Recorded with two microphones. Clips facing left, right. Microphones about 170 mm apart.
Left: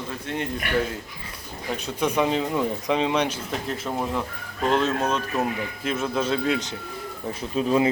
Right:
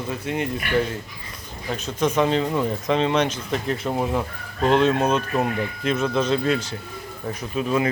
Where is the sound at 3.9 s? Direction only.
10° right (ahead or behind); by 6.8 s 15° left (ahead or behind).